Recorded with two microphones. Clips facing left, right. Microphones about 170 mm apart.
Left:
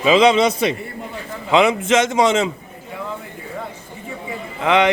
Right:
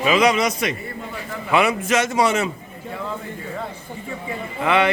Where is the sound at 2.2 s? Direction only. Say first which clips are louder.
Left 2 dB; 20° left (ahead or behind).